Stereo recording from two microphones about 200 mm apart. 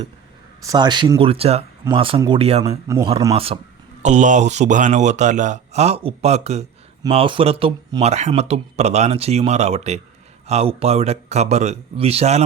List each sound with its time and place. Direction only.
0.6 s speech: 20° right (ahead or behind)
2.6 s a man's voice: 15° right (ahead or behind)
3.3 s speech: 30° right (ahead or behind)